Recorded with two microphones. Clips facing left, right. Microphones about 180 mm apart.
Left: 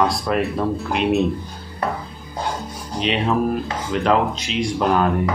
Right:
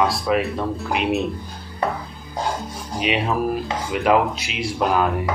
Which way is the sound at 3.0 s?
5° right (ahead or behind).